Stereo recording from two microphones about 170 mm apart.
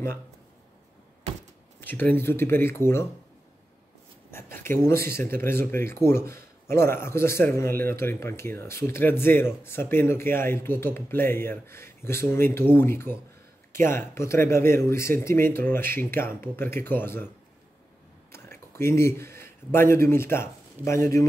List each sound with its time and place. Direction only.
1.8 s speech: 10° left (ahead or behind)
4.3 s speech: 15° left (ahead or behind)
18.3 s speech: 15° left (ahead or behind)